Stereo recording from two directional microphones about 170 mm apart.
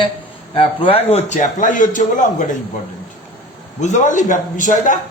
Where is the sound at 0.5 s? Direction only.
30° left (ahead or behind); by 2.2 s 50° left (ahead or behind).